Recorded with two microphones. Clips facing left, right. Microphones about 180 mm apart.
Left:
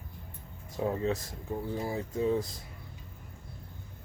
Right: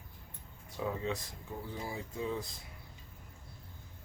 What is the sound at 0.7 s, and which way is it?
Speech, 40° left (ahead or behind).